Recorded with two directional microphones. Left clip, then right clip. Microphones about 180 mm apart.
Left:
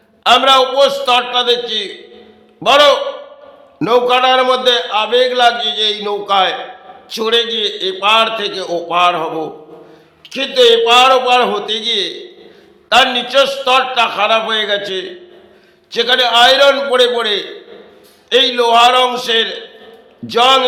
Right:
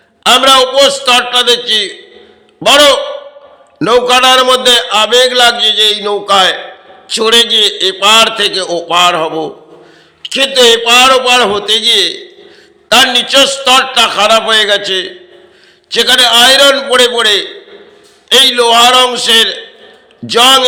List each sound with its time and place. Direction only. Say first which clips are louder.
0.2 s a man's voice: right 3 dB; 15° right (ahead or behind)